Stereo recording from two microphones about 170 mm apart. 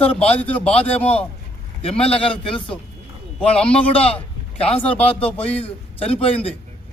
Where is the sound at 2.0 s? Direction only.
35° left (ahead or behind).